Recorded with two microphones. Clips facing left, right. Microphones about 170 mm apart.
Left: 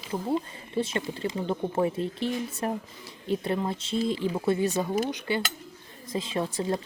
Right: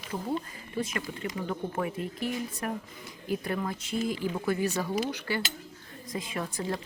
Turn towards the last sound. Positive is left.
turn(degrees=25)  # may be behind; listen again after turning